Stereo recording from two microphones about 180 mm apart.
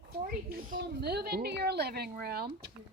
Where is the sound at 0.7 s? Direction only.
60° right (ahead or behind).